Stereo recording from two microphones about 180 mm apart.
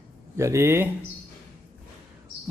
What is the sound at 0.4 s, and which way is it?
Speech, 15° right (ahead or behind).